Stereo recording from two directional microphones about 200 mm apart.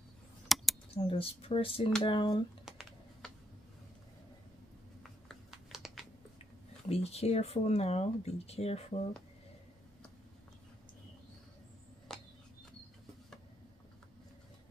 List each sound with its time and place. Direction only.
0.5 s a sound: centre (ahead or behind)
0.9 s speech: 30° left (ahead or behind)
2.6 s computer keyboard: centre (ahead or behind)
5.3 s typing: centre (ahead or behind)
6.9 s speech: 30° left (ahead or behind)
12.1 s a sound: centre (ahead or behind)